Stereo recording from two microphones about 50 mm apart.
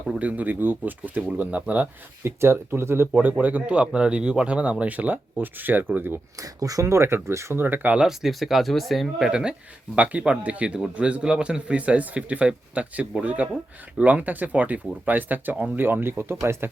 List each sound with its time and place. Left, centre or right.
0.2 s speech: right
2.2 s speech: right
3.1 s speech: right
6.8 s speech: right
7.5 s speech: right
8.0 s speech: centre
9.3 s speech: centre; by 16.4 s right